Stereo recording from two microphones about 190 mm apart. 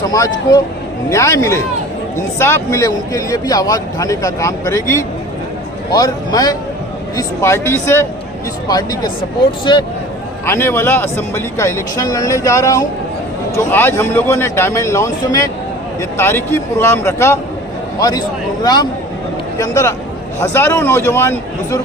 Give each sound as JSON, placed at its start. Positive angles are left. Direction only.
{"t": 0.0, "sound": "a man's voice", "side_deg": 20}
{"t": 10.4, "sound": "speech", "side_deg": 15}
{"t": 18.6, "sound": "a man's voice", "side_deg": 20}